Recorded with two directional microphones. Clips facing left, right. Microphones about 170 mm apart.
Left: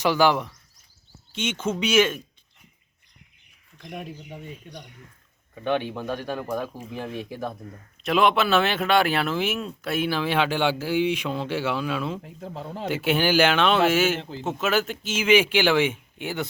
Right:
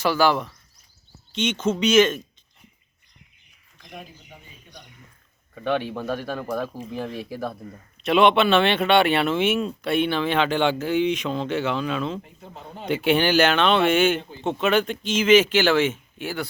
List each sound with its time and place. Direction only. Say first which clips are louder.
0.0 s speech: even; 15° left (ahead or behind)
3.8 s speech: left 5 dB; 65° left (ahead or behind)
6.0 s speech: right 1 dB; 15° left (ahead or behind)
7.1 s speech: right 1 dB; 5° right (ahead or behind)
12.2 s speech: left 6 dB; 90° left
12.9 s speech: right 3 dB; 5° left (ahead or behind)
14.2 s speech: left 2 dB; 90° left
14.4 s speech: right 3 dB; 5° left (ahead or behind)